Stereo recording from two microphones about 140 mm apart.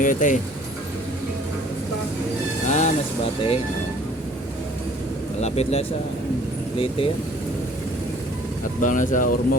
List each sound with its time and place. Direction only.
0.0 s speech: 70° left (ahead or behind)
2.6 s vehicle: 55° left (ahead or behind)
5.4 s speech: 50° left (ahead or behind)
8.8 s speech: 65° left (ahead or behind)